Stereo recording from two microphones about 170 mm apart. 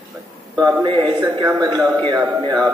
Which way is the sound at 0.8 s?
25° right (ahead or behind).